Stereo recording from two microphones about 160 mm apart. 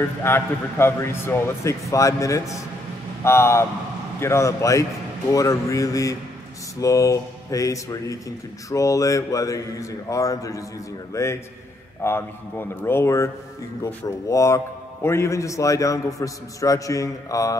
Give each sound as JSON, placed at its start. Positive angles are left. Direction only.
{"t": 0.2, "sound": "a man's voice", "side_deg": 15}